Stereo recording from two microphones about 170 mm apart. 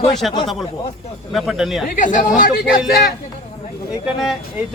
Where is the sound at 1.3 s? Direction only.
Centre (ahead or behind).